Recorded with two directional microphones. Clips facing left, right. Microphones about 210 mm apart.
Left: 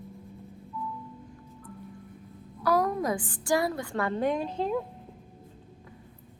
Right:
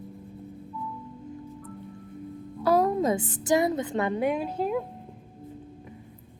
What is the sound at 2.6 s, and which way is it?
A woman's voice, 25° right (ahead or behind).